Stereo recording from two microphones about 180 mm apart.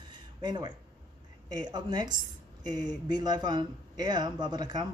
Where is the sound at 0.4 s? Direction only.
25° right (ahead or behind).